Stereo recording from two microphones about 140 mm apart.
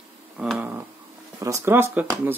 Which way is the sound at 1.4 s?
20° right (ahead or behind).